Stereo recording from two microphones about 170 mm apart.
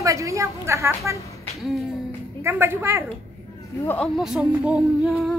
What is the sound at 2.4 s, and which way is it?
Speech, 15° right (ahead or behind).